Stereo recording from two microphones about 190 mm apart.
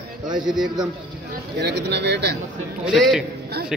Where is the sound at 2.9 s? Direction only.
Centre (ahead or behind).